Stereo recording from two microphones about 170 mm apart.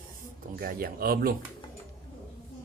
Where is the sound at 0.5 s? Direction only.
60° right (ahead or behind).